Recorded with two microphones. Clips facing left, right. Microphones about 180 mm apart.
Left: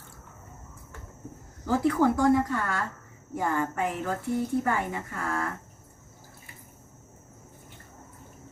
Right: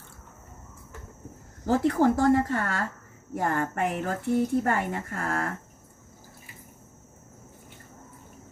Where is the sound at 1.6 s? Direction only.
40° right (ahead or behind).